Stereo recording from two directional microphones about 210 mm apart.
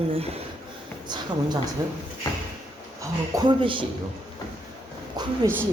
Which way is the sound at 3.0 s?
20° right (ahead or behind).